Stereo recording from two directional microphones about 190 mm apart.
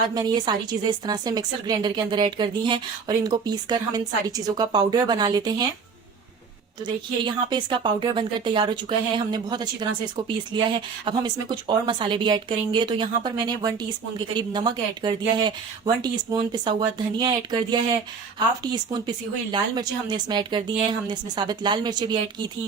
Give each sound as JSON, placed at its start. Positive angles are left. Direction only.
{"t": 0.1, "sound": "a woman's voice", "side_deg": -20}
{"t": 6.8, "sound": "a woman's voice", "side_deg": -25}